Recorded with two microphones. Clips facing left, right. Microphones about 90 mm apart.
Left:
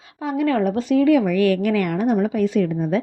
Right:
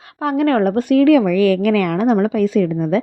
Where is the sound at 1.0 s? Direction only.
90° right.